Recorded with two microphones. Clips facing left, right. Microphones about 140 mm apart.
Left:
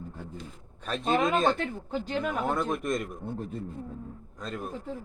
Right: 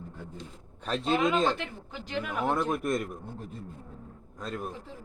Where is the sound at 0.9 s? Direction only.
45° left (ahead or behind).